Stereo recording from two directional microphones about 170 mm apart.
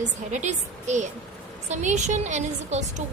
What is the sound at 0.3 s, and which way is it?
A woman's voice, 45° right (ahead or behind).